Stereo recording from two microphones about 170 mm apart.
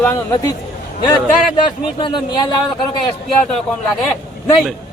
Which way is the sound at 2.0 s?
25° left (ahead or behind).